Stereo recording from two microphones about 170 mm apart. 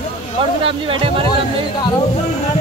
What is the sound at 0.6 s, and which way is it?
Speech, 30° right (ahead or behind).